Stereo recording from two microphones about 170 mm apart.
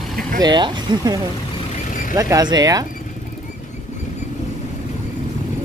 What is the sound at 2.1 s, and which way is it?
Speech, 20° right (ahead or behind).